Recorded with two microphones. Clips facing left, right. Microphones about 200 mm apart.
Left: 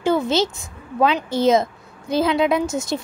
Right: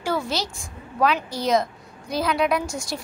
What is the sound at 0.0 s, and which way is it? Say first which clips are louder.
A woman's voice: left 7 dB; 20° left (ahead or behind).